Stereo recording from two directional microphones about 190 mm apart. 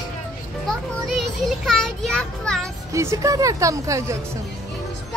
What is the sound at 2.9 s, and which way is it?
Speech, 15° right (ahead or behind).